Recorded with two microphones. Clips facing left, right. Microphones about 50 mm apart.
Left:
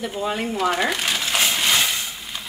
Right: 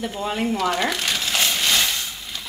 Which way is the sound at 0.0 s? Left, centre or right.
Centre.